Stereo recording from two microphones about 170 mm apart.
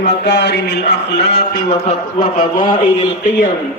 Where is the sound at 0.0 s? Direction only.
75° left (ahead or behind).